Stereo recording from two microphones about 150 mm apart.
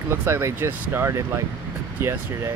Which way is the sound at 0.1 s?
15° right (ahead or behind).